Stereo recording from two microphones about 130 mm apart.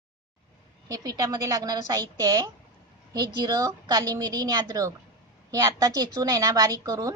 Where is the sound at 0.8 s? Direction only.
25° right (ahead or behind).